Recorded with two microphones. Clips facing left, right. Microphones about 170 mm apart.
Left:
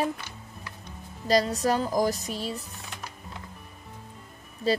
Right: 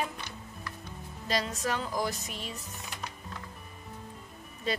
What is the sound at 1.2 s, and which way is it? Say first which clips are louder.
Speech: left 8 dB; 35° left (ahead or behind).